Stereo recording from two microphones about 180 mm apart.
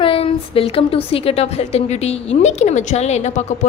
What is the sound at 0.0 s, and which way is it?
A woman's voice, 30° left (ahead or behind).